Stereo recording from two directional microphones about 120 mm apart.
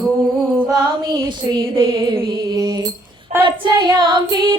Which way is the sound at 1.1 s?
40° right (ahead or behind).